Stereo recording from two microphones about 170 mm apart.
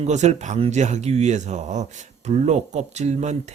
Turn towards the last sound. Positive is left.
turn(degrees=-40)  # may be behind; listen again after turning